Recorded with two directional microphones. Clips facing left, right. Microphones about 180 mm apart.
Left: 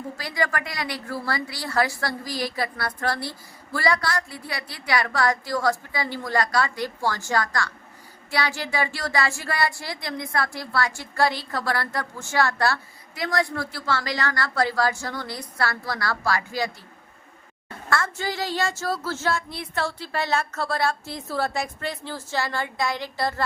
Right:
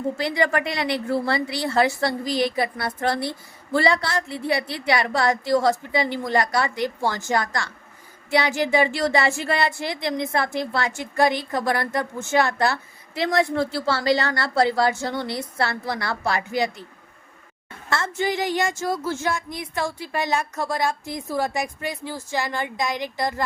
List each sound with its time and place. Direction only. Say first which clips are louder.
0.2 s speech: right 3 dB; 25° right (ahead or behind)
17.8 s a woman's voice: right 2 dB; 20° right (ahead or behind)